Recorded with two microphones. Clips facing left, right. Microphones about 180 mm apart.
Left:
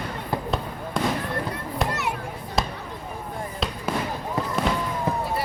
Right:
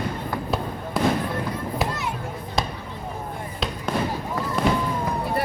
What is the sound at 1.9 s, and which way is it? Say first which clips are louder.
Children playing: left 1 dB; 70° left (ahead or behind).